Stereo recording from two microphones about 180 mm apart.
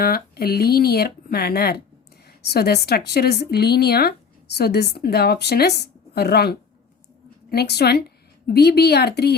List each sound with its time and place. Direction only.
0.0 s a woman's voice: 55° left (ahead or behind)